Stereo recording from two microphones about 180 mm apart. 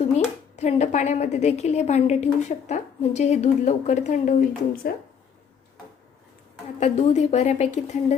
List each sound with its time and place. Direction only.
0.5 s a woman's voice: 40° left (ahead or behind)
6.7 s a woman's voice: 40° left (ahead or behind)